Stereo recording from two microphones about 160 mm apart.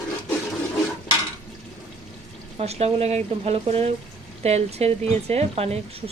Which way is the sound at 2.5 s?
40° right (ahead or behind).